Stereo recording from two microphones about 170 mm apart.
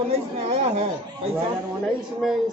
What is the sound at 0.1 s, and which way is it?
Speech, 35° right (ahead or behind).